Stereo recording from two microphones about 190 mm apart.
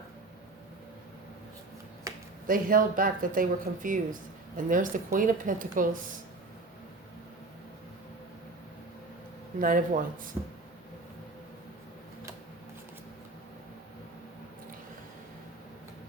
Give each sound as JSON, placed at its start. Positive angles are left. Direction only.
{"t": 2.5, "sound": "speech", "side_deg": -45}
{"t": 9.6, "sound": "speech", "side_deg": -45}